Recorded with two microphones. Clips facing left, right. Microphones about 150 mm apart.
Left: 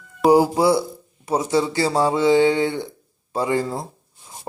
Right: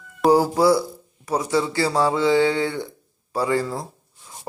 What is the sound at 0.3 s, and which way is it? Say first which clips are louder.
Speech: left 1 dB; 15° left (ahead or behind).